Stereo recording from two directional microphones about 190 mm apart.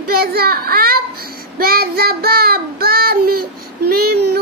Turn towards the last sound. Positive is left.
turn(degrees=-55)  # may be behind; listen again after turning